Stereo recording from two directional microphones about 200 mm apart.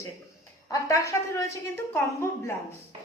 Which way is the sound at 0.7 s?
15° left (ahead or behind).